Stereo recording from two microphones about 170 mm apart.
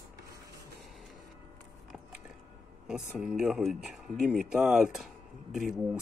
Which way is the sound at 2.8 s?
5° right (ahead or behind).